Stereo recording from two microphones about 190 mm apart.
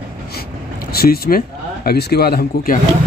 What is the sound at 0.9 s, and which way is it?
Speech, 55° left (ahead or behind).